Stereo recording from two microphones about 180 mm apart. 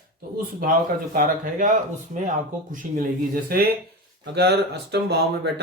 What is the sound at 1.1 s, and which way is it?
Speech, 50° right (ahead or behind).